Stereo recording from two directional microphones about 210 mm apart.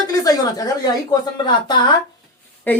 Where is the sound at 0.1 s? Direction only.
15° left (ahead or behind).